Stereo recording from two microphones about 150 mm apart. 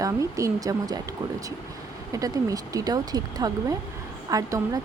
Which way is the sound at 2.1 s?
25° right (ahead or behind).